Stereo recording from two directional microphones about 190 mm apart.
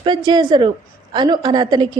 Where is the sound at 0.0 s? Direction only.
25° right (ahead or behind).